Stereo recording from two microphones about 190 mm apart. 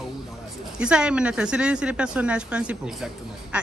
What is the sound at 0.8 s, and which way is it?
Speech, 5° right (ahead or behind).